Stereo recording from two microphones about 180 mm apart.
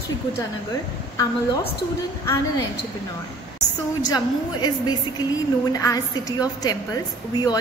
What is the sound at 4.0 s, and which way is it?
A woman's voice, 20° left (ahead or behind).